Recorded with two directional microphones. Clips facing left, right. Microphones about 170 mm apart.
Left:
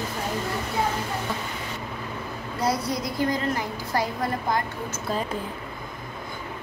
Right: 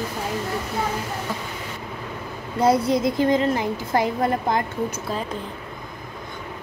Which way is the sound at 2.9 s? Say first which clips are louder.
Right 7 dB; 25° right (ahead or behind).